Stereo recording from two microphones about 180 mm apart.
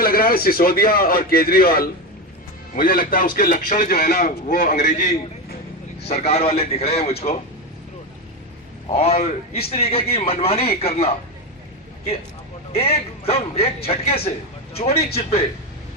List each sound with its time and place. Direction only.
0.0 s a man's voice: 55° left (ahead or behind); by 7.3 s 35° left (ahead or behind)
8.9 s a man's voice: 35° left (ahead or behind)
12.7 s a man's voice: 35° left (ahead or behind)